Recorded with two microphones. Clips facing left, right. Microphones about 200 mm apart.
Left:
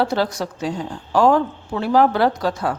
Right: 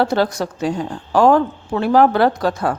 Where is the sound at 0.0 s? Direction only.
50° right (ahead or behind).